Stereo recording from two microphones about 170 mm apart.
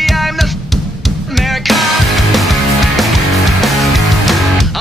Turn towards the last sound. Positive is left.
turn(degrees=0)  # may be behind; listen again after turning